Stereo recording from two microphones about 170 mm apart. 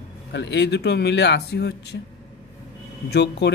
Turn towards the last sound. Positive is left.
turn(degrees=80)